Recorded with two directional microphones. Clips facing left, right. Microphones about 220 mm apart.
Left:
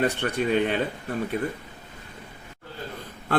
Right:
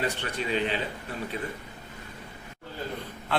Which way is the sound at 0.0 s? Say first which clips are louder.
Left 6 dB; 50° left (ahead or behind).